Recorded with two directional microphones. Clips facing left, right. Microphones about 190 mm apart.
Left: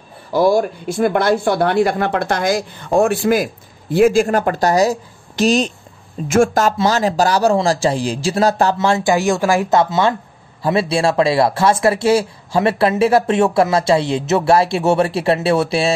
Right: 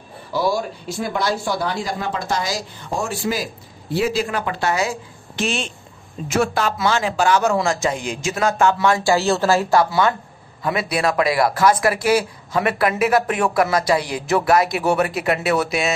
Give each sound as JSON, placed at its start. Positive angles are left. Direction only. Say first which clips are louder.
{"t": 0.3, "sound": "speech", "louder": "left 7 dB", "side_deg": 50}
{"t": 6.2, "sound": "speech", "louder": "left 6 dB", "side_deg": 50}
{"t": 8.7, "sound": "speech", "louder": "left 2 dB", "side_deg": 25}